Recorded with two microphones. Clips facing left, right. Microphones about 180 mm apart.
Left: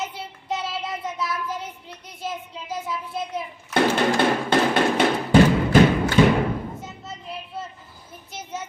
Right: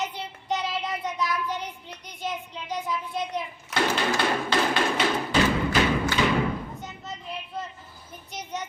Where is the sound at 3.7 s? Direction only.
55° left (ahead or behind).